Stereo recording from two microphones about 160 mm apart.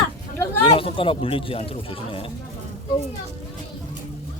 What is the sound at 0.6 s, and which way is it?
Speech, 35° left (ahead or behind).